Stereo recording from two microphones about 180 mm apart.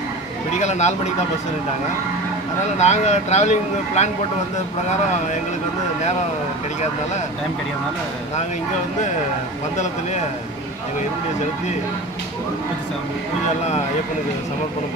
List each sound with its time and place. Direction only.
0.5 s speech: 40° left (ahead or behind)
2.8 s speech: 40° left (ahead or behind)